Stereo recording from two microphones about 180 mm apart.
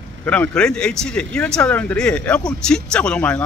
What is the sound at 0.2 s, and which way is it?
A man's voice, 5° left (ahead or behind).